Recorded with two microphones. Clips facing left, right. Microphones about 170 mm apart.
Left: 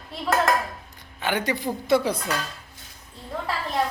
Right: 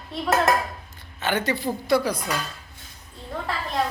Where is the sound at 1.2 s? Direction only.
15° left (ahead or behind).